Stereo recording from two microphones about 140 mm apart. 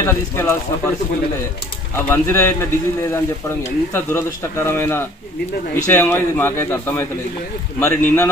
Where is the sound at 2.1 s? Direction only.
20° left (ahead or behind).